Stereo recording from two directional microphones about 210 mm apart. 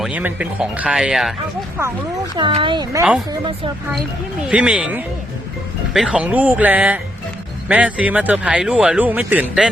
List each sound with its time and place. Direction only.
0.0 s speech: 5° right (ahead or behind)
2.4 s speech: 25° right (ahead or behind)
4.4 s speech: 5° right (ahead or behind)